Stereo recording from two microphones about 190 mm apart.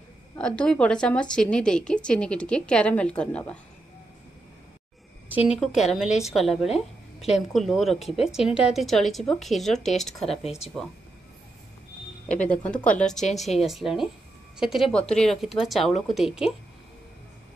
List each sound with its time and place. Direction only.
0.4 s a woman's voice: 5° left (ahead or behind)
5.3 s a woman's voice: 5° right (ahead or behind)
6.7 s speech: 35° left (ahead or behind)
7.3 s a woman's voice: centre (ahead or behind)
12.4 s a woman's voice: 5° left (ahead or behind)